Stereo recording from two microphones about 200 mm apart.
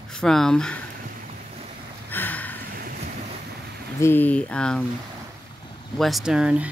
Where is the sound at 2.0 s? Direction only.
10° left (ahead or behind).